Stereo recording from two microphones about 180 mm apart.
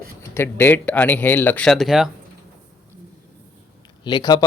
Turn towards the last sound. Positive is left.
turn(degrees=25)  # may be behind; listen again after turning